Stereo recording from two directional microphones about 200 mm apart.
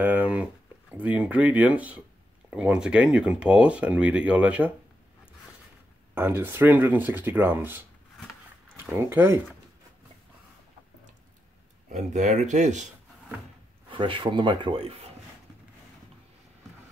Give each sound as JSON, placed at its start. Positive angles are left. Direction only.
{"t": 0.0, "sound": "a sound", "side_deg": -5}
{"t": 2.5, "sound": "speech", "side_deg": -5}
{"t": 6.1, "sound": "speech", "side_deg": -10}
{"t": 11.9, "sound": "speech", "side_deg": -35}
{"t": 13.8, "sound": "speech", "side_deg": -25}